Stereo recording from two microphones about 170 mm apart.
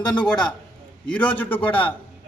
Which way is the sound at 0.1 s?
5° left (ahead or behind).